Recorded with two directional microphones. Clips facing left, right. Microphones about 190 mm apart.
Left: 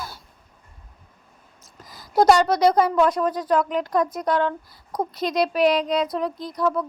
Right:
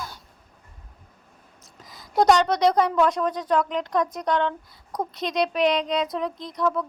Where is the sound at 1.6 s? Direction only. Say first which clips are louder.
Left 2 dB; centre (ahead or behind).